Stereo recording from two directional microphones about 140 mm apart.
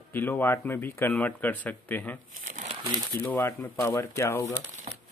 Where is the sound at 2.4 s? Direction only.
60° right (ahead or behind).